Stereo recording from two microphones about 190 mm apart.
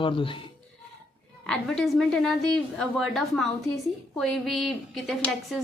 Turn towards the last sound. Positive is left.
turn(degrees=0)  # may be behind; listen again after turning